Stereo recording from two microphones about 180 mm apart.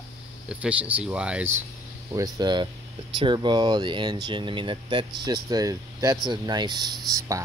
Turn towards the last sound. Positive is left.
turn(degrees=-20)  # may be behind; listen again after turning